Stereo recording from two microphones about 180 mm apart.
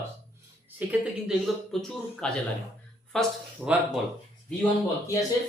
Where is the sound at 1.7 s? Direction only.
Centre (ahead or behind).